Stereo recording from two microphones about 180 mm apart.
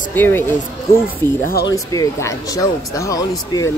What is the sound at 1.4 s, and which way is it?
Speech, 60° left (ahead or behind).